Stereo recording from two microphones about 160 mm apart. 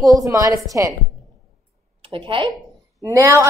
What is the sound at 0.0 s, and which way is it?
Speech, 20° right (ahead or behind).